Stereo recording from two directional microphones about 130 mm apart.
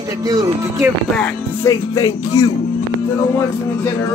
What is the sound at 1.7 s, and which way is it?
Speech, 25° left (ahead or behind).